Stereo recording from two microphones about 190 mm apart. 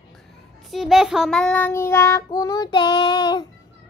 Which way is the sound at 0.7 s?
Centre (ahead or behind).